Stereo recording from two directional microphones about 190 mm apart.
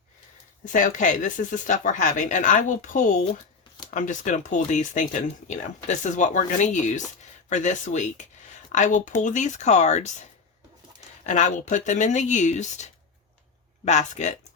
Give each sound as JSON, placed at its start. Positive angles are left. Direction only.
{"t": 0.6, "sound": "speech", "side_deg": 45}